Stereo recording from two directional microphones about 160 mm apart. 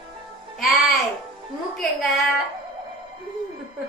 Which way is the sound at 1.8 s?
Centre (ahead or behind).